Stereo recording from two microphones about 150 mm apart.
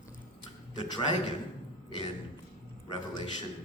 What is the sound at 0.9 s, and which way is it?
Speech, 30° left (ahead or behind).